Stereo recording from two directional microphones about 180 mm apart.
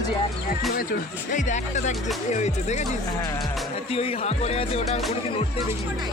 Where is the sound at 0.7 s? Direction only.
50° left (ahead or behind).